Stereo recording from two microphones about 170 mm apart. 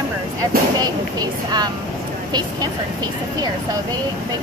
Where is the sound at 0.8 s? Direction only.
25° right (ahead or behind).